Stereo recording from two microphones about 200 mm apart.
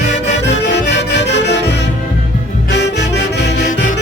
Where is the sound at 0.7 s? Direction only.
60° left (ahead or behind).